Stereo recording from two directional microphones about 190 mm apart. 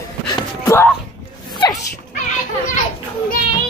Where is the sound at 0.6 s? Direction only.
15° left (ahead or behind).